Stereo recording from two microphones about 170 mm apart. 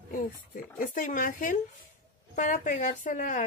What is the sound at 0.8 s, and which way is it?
Speech, 50° left (ahead or behind).